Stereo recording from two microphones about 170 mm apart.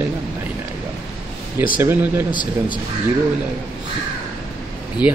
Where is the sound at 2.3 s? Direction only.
25° left (ahead or behind).